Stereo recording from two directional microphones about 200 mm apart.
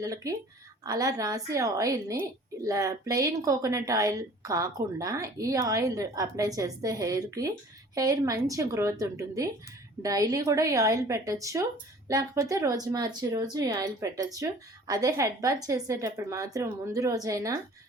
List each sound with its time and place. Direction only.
0.0 s speech: 15° right (ahead or behind)